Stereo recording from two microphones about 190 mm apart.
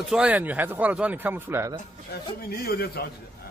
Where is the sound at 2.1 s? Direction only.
55° left (ahead or behind).